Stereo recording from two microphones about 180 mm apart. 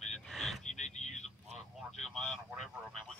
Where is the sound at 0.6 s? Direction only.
40° left (ahead or behind).